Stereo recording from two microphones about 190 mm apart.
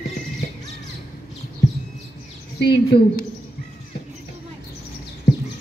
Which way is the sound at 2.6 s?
60° left (ahead or behind).